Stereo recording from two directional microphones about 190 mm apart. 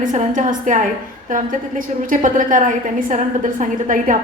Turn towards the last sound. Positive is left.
turn(degrees=-45)  # may be behind; listen again after turning